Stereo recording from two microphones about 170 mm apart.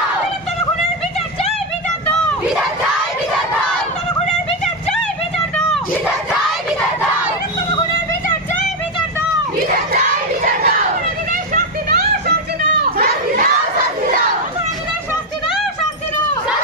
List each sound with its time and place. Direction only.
9.9 s crowd: 60° right (ahead or behind)
11.5 s a sound: 60° right (ahead or behind)
12.8 s children playing: 60° right (ahead or behind)